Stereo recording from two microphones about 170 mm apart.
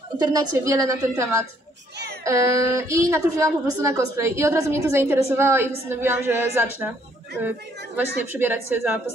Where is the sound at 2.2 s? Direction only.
20° right (ahead or behind).